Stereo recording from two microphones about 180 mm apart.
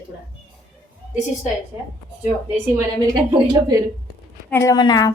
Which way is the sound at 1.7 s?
15° right (ahead or behind).